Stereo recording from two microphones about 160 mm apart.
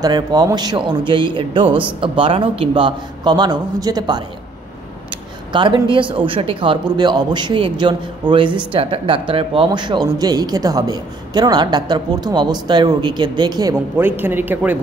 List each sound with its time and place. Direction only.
0.0 s a man's voice: 25° right (ahead or behind)
5.5 s a man's voice: 30° right (ahead or behind)
13.9 s a man's voice: 15° right (ahead or behind)